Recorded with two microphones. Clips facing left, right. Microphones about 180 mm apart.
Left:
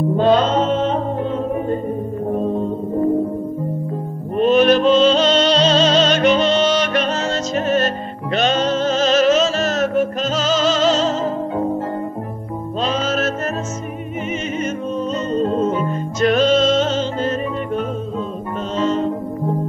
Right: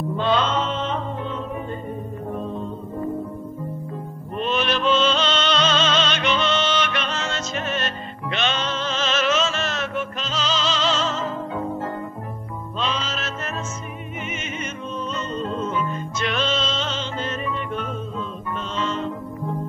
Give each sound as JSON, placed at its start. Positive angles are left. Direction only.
{"t": 0.1, "sound": "mantra", "side_deg": 40}
{"t": 2.3, "sound": "music", "side_deg": 40}
{"t": 4.4, "sound": "music", "side_deg": 45}
{"t": 12.8, "sound": "music", "side_deg": 45}
{"t": 15.3, "sound": "music", "side_deg": 40}
{"t": 18.8, "sound": "music", "side_deg": 40}